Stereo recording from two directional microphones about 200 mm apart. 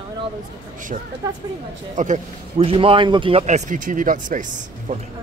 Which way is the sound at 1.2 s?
15° right (ahead or behind).